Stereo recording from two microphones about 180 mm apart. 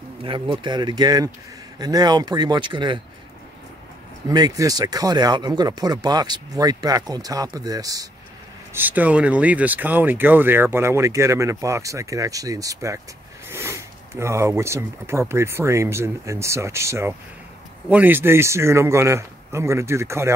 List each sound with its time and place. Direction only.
0.2 s speech: 25° right (ahead or behind)
4.3 s speech: 20° right (ahead or behind)
8.7 s speech: 10° right (ahead or behind)